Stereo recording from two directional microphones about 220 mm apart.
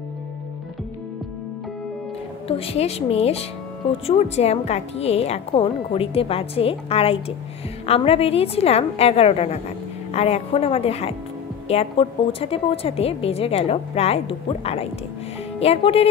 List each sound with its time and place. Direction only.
2.4 s a woman's voice: 25° left (ahead or behind)